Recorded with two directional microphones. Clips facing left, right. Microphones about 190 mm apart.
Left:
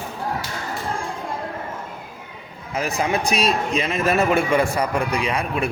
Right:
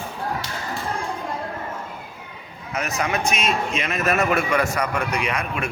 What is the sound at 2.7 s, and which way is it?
A man's voice, 30° left (ahead or behind).